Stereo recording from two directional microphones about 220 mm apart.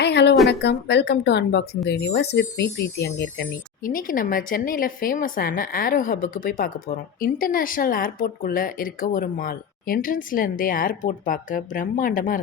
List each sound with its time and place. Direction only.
0.0 s a sound: 50° left (ahead or behind)
0.4 s speech: 50° left (ahead or behind)
3.8 s a woman's voice: 40° left (ahead or behind)